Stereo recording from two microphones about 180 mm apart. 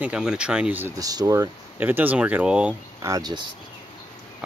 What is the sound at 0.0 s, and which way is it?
Speech, 5° right (ahead or behind).